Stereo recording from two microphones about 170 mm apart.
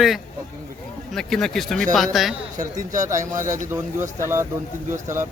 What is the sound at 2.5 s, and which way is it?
Speech, 50° right (ahead or behind).